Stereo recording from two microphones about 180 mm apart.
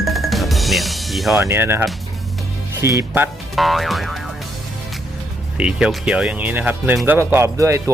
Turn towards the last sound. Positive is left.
turn(degrees=-15)  # may be behind; listen again after turning